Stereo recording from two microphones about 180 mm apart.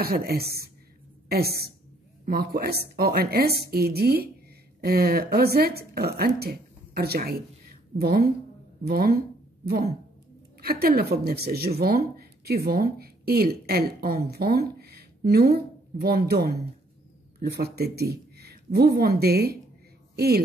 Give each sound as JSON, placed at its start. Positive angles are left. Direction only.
{"t": 0.0, "sound": "speech", "side_deg": -55}
{"t": 10.6, "sound": "a woman's voice", "side_deg": -55}